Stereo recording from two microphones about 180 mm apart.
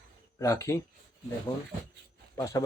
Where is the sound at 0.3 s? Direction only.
15° left (ahead or behind).